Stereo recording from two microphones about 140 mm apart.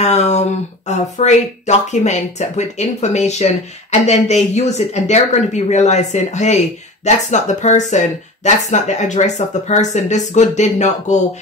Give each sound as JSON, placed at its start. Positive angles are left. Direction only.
{"t": 0.0, "sound": "speech", "side_deg": 55}